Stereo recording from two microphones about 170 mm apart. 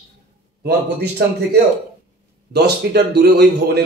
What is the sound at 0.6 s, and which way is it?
A man's voice, 75° right (ahead or behind).